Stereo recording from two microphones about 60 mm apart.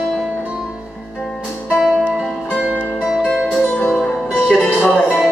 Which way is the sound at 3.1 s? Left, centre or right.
Centre.